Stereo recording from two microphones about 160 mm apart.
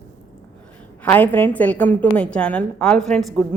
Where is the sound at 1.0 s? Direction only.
10° left (ahead or behind).